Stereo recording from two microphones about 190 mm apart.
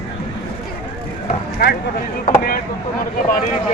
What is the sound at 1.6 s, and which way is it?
Speech, 55° left (ahead or behind).